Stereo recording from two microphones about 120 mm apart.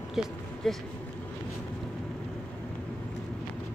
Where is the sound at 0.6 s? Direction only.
5° left (ahead or behind).